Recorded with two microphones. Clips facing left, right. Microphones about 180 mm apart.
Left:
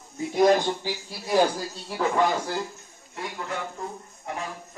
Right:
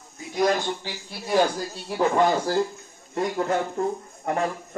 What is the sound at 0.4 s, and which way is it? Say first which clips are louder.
Speech: left 3 dB; 20° left (ahead or behind).